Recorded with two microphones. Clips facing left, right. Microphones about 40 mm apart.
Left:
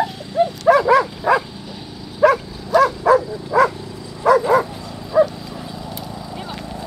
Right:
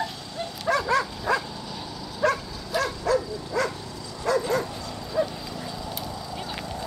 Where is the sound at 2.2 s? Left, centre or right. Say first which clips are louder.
Left 10 dB; centre.